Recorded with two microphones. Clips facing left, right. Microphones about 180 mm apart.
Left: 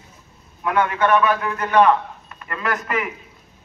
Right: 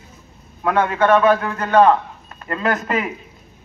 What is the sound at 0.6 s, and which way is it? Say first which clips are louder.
A man's voice: right 3 dB; 30° right (ahead or behind).